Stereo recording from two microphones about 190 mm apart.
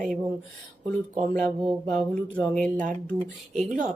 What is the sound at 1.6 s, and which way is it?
Speech, centre (ahead or behind).